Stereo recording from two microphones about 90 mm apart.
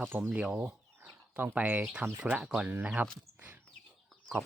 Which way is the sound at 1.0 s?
15° right (ahead or behind).